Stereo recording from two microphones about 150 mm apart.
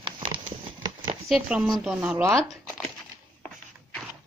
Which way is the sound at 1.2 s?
5° right (ahead or behind).